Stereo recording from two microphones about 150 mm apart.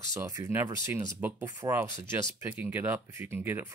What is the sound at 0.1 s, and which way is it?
Speech, 20° right (ahead or behind).